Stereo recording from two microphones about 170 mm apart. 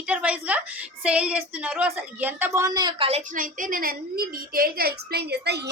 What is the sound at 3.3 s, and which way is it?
A woman's voice, 55° right (ahead or behind).